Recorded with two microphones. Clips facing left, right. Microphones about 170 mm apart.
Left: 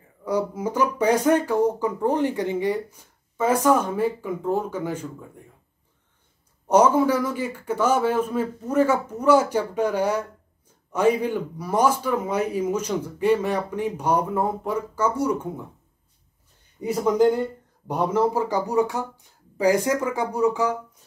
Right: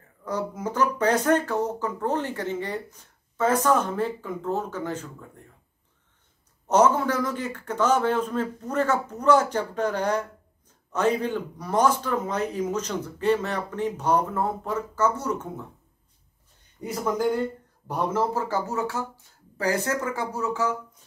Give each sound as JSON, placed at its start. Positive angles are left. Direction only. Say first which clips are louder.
{"t": 0.2, "sound": "speech", "louder": "left 5 dB", "side_deg": 10}
{"t": 6.7, "sound": "speech", "louder": "left 3 dB", "side_deg": 10}
{"t": 16.8, "sound": "speech", "louder": "left 6 dB", "side_deg": 15}